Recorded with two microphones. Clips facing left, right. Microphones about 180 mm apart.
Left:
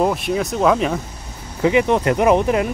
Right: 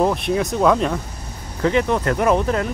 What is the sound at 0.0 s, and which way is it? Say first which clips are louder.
Speech: even; centre (ahead or behind).